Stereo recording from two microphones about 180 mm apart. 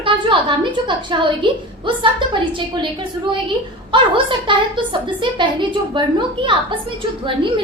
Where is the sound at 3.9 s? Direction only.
25° right (ahead or behind).